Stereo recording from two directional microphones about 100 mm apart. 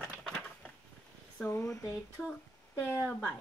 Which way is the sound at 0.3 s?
15° left (ahead or behind).